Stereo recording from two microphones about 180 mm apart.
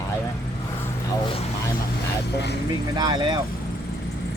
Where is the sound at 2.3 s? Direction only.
70° left (ahead or behind).